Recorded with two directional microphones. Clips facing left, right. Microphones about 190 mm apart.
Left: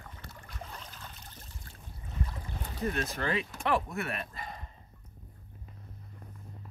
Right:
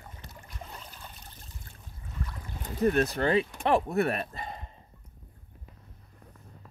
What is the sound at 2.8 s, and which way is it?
Speech, 40° right (ahead or behind).